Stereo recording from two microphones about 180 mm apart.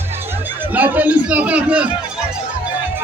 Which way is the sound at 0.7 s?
10° right (ahead or behind).